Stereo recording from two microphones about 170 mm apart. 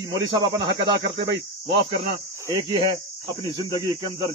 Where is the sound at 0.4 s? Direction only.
90° right.